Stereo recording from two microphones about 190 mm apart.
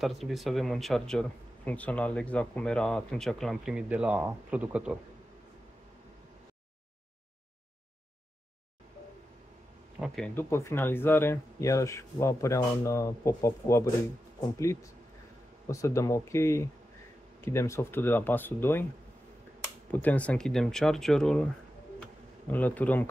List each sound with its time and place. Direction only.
0.0 s speech: centre (ahead or behind)
9.9 s speech: centre (ahead or behind)
19.9 s speech: 10° left (ahead or behind)
22.5 s speech: 10° left (ahead or behind)